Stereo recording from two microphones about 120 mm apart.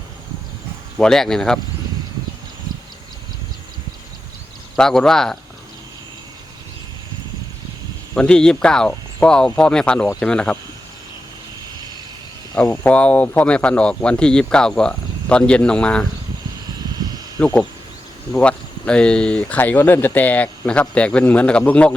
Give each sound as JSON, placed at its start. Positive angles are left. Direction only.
{"t": 0.9, "sound": "speech", "side_deg": 5}
{"t": 4.8, "sound": "speech", "side_deg": 5}
{"t": 8.1, "sound": "speech", "side_deg": 5}
{"t": 12.6, "sound": "speech", "side_deg": 20}
{"t": 12.9, "sound": "speech", "side_deg": 10}
{"t": 17.4, "sound": "speech", "side_deg": 10}